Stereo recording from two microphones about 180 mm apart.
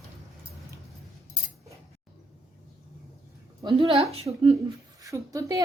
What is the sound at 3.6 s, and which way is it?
Speech, 30° right (ahead or behind).